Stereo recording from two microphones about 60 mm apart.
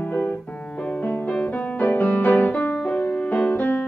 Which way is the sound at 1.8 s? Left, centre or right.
Left.